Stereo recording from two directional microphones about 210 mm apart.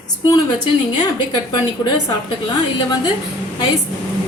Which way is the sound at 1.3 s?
20° left (ahead or behind).